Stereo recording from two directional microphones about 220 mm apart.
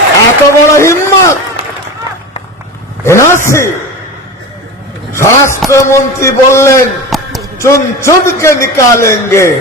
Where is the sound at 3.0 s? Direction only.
10° left (ahead or behind).